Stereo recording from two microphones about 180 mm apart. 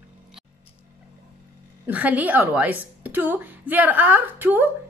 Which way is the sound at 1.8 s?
10° right (ahead or behind).